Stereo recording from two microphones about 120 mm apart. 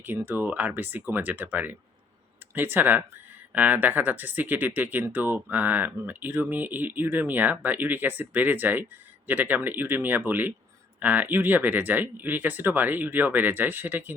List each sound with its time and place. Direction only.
0.0 s speech: 15° right (ahead or behind)